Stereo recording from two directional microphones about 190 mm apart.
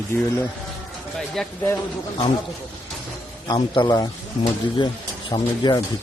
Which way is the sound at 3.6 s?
25° left (ahead or behind).